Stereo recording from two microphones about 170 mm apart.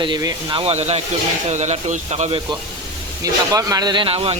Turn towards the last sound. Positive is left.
turn(degrees=-35)  # may be behind; listen again after turning